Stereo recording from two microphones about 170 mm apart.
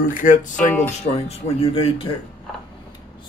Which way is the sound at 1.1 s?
35° left (ahead or behind).